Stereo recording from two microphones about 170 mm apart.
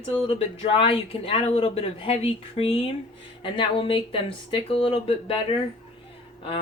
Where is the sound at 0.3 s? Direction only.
35° left (ahead or behind).